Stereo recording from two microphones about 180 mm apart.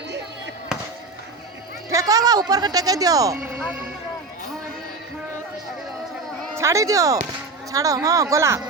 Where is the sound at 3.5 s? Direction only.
5° right (ahead or behind).